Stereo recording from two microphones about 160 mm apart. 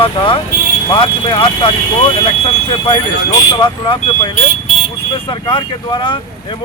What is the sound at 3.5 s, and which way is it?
Speech, 30° left (ahead or behind).